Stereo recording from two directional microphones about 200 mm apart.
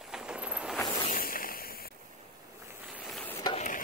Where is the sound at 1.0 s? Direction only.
45° left (ahead or behind).